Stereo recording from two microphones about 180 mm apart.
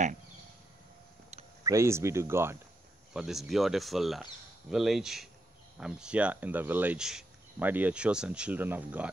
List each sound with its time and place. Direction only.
1.6 s speech: 15° right (ahead or behind)
3.1 s speech: 5° right (ahead or behind)